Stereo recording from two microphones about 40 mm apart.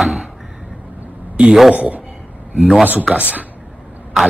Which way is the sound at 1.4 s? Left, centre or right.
Centre.